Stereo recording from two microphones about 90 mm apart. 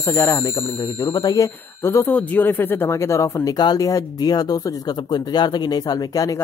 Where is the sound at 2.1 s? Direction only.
20° left (ahead or behind); by 6.3 s 45° left (ahead or behind).